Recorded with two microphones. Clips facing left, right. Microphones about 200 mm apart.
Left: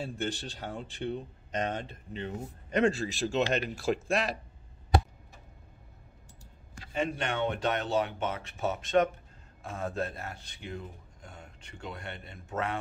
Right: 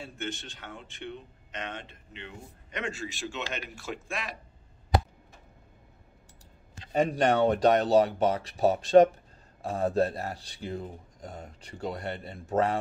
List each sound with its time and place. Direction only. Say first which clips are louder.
0.0 s speech: left 3 dB; 35° left (ahead or behind)
6.9 s a man's voice: right 7 dB; 40° right (ahead or behind)